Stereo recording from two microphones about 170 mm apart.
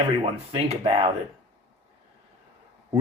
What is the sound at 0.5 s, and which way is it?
Speech, 35° right (ahead or behind).